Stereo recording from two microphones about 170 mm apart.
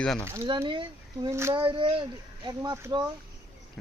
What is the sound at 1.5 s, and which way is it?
Speech, 30° right (ahead or behind).